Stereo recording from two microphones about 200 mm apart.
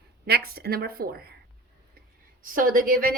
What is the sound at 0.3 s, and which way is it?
A woman's voice, 50° right (ahead or behind).